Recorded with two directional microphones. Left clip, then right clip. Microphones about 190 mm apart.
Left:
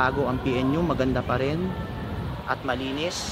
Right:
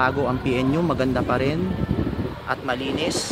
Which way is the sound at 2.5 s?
15° right (ahead or behind).